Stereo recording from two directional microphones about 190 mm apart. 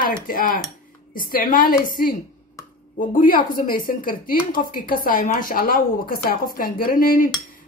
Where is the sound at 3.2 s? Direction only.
45° left (ahead or behind).